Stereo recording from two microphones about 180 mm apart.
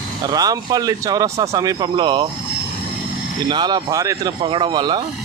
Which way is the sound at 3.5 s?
25° right (ahead or behind).